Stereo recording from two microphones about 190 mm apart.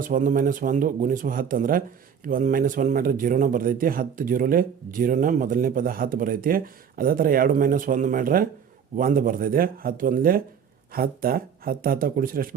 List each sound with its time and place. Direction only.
0.0 s a man's voice: 45° right (ahead or behind)